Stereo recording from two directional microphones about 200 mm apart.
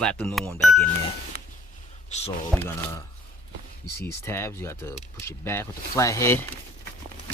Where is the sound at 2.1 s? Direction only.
35° left (ahead or behind).